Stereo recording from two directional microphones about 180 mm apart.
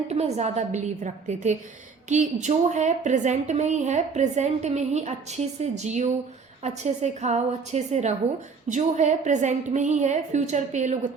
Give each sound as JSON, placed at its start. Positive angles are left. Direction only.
{"t": 0.1, "sound": "a woman's voice", "side_deg": -35}